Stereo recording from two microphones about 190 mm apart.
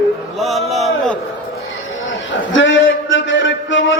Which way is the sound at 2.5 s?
90° left.